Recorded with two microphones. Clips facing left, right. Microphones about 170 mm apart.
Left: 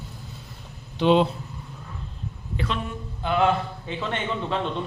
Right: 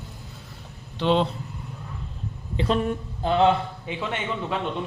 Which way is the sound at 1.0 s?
10° left (ahead or behind).